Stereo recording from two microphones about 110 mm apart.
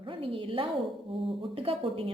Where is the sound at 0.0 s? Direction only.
50° right (ahead or behind).